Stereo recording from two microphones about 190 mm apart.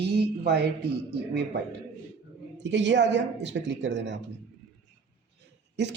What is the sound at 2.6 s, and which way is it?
A woman's voice, 70° right (ahead or behind).